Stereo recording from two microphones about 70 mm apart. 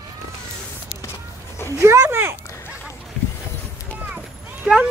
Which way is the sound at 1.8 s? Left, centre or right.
Right.